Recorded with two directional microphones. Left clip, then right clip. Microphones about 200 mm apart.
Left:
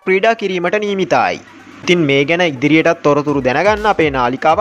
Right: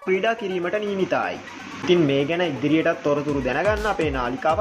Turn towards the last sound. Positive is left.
turn(degrees=30)  # may be behind; listen again after turning